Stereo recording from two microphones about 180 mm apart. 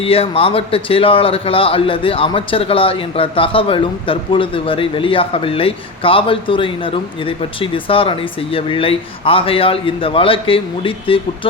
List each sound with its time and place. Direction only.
0.0 s a man's voice: 30° left (ahead or behind)